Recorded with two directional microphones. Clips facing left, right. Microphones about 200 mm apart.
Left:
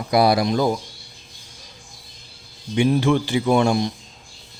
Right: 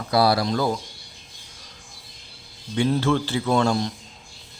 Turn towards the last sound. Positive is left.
turn(degrees=15)  # may be behind; listen again after turning